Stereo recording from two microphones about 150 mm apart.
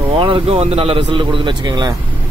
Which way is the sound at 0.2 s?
35° right (ahead or behind).